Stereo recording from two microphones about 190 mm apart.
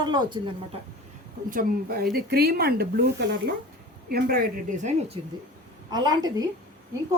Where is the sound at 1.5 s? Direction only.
50° right (ahead or behind).